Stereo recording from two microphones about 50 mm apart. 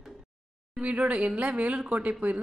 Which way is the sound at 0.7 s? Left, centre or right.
Right.